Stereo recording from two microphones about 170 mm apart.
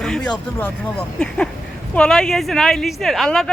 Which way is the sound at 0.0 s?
5° left (ahead or behind).